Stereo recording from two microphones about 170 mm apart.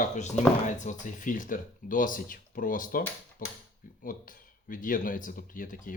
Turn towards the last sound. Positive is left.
turn(degrees=55)  # may be behind; listen again after turning